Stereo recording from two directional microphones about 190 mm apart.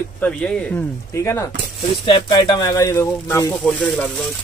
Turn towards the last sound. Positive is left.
turn(degrees=15)  # may be behind; listen again after turning